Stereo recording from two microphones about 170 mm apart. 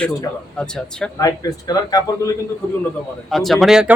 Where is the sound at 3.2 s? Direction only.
Centre (ahead or behind).